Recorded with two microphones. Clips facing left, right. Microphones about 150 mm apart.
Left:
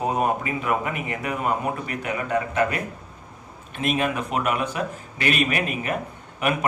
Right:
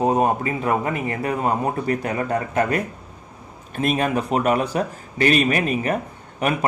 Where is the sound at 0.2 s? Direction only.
35° right (ahead or behind).